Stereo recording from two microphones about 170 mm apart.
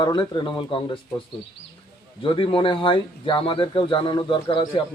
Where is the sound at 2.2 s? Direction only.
30° left (ahead or behind).